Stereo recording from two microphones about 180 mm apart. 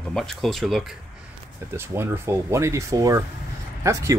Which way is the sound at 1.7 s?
10° right (ahead or behind).